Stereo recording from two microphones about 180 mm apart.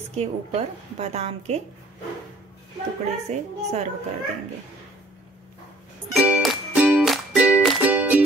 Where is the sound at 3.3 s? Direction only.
40° right (ahead or behind).